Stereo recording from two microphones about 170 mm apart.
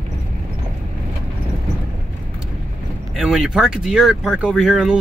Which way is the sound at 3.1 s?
5° right (ahead or behind).